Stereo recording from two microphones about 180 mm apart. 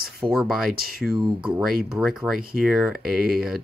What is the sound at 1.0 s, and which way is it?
Speech, centre (ahead or behind).